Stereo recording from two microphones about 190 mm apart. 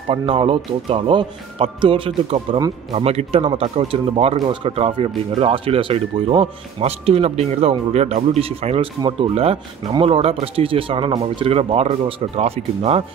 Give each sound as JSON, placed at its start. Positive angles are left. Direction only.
{"t": 0.1, "sound": "speech", "side_deg": -30}